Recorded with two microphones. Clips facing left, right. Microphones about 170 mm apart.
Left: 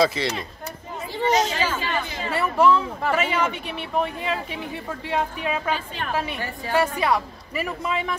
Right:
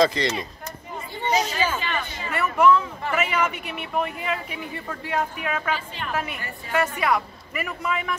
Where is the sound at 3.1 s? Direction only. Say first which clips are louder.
Left 1 dB; 30° left (ahead or behind).